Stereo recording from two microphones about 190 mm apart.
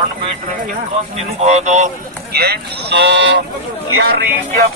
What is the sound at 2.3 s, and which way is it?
Speech, 60° right (ahead or behind).